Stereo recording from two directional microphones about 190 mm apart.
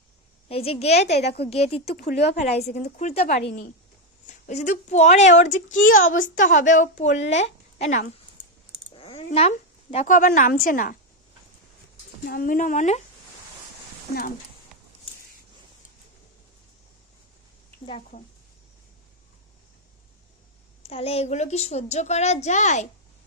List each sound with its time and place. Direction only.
0.4 s a woman's voice: 30° left (ahead or behind)
1.1 s a woman's voice: 60° left (ahead or behind)
1.5 s a woman's voice: 30° left (ahead or behind)
12.2 s speech: 50° left (ahead or behind)
20.8 s a woman's voice: 30° left (ahead or behind)